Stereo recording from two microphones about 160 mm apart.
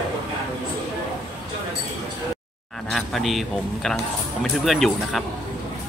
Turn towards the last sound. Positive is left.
turn(degrees=0)  # may be behind; listen again after turning